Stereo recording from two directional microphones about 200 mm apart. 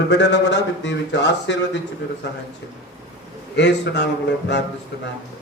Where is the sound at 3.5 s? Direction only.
60° left (ahead or behind).